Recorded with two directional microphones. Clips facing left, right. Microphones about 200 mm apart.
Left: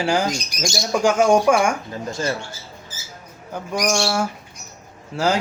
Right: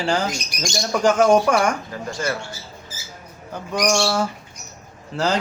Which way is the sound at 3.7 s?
5° left (ahead or behind).